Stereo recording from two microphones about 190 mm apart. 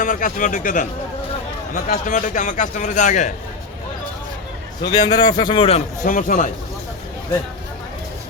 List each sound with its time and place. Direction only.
0.0 s a man's voice: 45° left (ahead or behind)
4.8 s a man's voice: 20° left (ahead or behind)
6.1 s speech: 45° left (ahead or behind)